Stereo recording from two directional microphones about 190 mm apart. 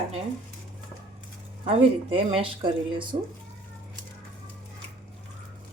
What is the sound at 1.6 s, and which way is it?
Speech, 30° right (ahead or behind).